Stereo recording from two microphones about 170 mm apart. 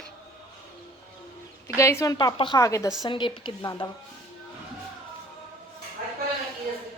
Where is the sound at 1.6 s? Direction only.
15° left (ahead or behind).